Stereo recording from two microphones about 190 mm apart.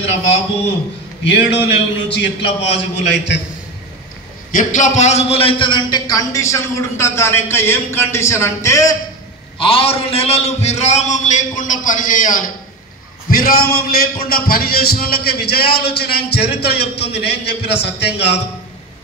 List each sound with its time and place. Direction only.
1.2 s a man's voice: 60° left (ahead or behind)
4.5 s a man's voice: 40° left (ahead or behind); by 8.9 s 15° left (ahead or behind)
9.6 s a man's voice: 30° left (ahead or behind); by 18.3 s 65° left (ahead or behind)